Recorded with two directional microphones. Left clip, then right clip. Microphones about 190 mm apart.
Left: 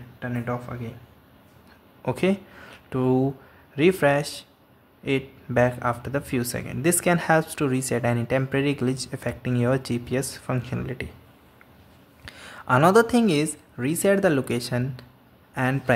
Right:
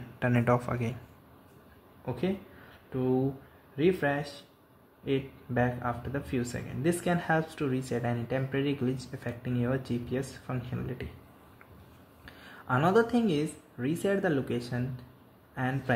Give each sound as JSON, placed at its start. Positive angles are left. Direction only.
{"t": 0.2, "sound": "speech", "side_deg": -15}
{"t": 2.0, "sound": "speech", "side_deg": 25}
{"t": 12.3, "sound": "speech", "side_deg": 20}